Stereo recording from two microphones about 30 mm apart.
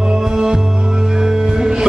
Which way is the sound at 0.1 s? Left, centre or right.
Right.